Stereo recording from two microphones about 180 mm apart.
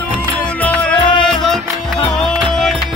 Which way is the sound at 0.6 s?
10° left (ahead or behind).